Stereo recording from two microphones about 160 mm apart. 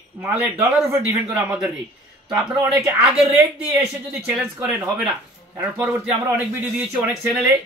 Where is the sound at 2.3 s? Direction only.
10° right (ahead or behind).